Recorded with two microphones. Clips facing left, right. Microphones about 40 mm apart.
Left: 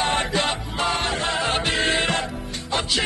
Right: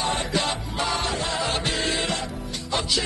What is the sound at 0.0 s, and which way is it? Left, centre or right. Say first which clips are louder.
Music: left 3 dB; left.